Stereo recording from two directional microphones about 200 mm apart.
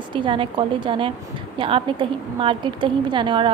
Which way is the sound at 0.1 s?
25° right (ahead or behind).